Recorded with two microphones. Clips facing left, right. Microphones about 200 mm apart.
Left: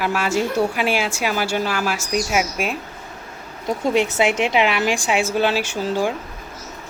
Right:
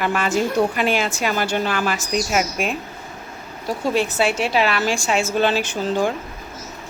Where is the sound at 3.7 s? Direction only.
20° left (ahead or behind).